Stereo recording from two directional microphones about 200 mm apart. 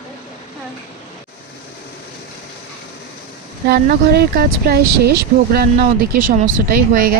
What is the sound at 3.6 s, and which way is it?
Speech, 55° right (ahead or behind).